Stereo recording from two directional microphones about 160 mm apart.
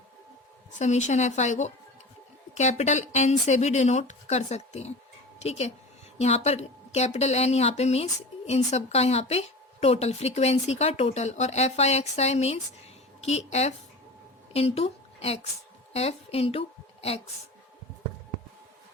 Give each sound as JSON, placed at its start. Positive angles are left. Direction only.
{"t": 0.8, "sound": "a woman's voice", "side_deg": 45}